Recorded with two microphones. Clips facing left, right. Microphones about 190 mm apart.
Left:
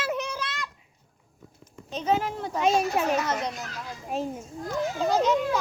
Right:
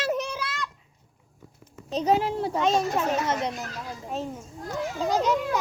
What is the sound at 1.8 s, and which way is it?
Speech, 35° right (ahead or behind).